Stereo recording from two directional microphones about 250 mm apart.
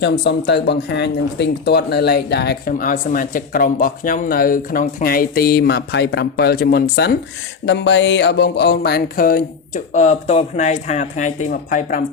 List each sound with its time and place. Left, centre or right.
0.0 s speech: left